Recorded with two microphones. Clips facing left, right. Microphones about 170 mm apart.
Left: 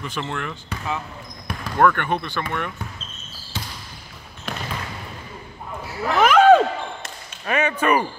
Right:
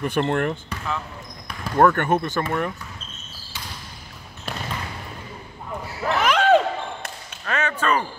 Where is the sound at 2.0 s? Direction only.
45° right (ahead or behind).